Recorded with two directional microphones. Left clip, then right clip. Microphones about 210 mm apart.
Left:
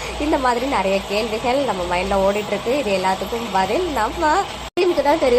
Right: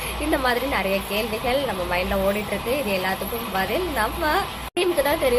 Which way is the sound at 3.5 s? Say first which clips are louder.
Left 4 dB; 15° left (ahead or behind).